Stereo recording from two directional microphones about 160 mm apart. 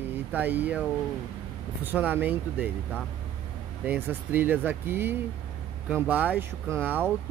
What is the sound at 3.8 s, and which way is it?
Speech, 10° right (ahead or behind).